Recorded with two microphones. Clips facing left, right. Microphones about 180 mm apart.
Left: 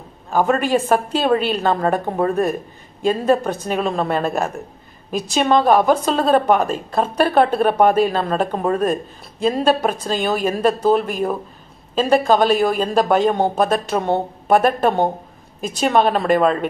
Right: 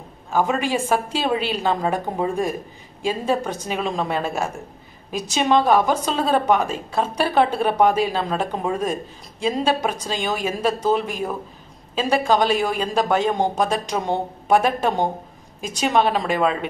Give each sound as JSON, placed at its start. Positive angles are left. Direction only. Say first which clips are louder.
{"t": 0.3, "sound": "a woman's voice", "louder": "left 4 dB", "side_deg": 50}